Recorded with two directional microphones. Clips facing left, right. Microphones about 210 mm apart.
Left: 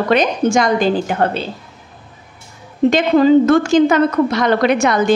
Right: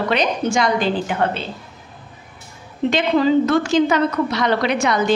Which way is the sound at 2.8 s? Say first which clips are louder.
Left 5 dB; 45° left (ahead or behind).